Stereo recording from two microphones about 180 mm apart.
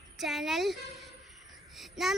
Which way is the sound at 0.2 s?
Centre (ahead or behind).